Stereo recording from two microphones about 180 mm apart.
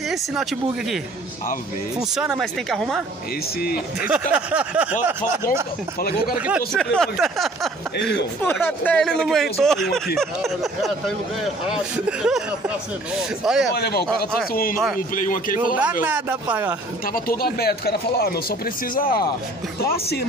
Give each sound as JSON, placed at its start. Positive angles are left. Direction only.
{"t": 0.1, "sound": "speech", "side_deg": 0}
{"t": 2.0, "sound": "speech", "side_deg": -5}
{"t": 3.6, "sound": "speech", "side_deg": 55}
{"t": 4.3, "sound": "speech", "side_deg": -5}
{"t": 5.9, "sound": "speech", "side_deg": 55}
{"t": 6.3, "sound": "speech", "side_deg": -5}
{"t": 12.1, "sound": "speech", "side_deg": -5}
{"t": 13.7, "sound": "speech", "side_deg": 60}
{"t": 15.8, "sound": "speech", "side_deg": -10}
{"t": 17.0, "sound": "speech", "side_deg": 55}